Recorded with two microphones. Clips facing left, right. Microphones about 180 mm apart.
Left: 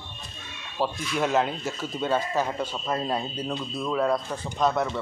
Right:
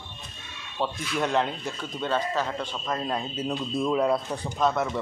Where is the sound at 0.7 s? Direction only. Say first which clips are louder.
Left 1 dB; centre (ahead or behind).